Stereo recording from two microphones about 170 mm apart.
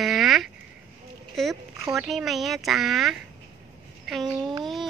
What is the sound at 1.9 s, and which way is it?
Speech, centre (ahead or behind).